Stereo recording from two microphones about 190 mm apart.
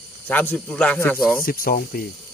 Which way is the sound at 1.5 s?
50° left (ahead or behind).